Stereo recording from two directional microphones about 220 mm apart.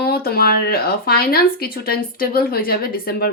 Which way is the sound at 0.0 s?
45° left (ahead or behind).